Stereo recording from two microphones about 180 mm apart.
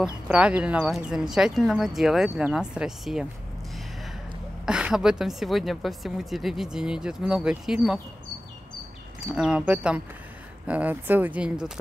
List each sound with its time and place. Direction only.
0.0 s speech: 5° right (ahead or behind)
4.6 s speech: 5° right (ahead or behind)
9.3 s speech: 5° right (ahead or behind)